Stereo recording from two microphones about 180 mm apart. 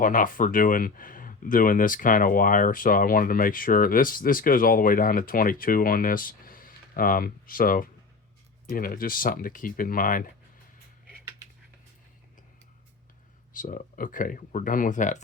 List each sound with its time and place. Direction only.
0.0 s speech: 50° left (ahead or behind)
13.6 s speech: 50° left (ahead or behind)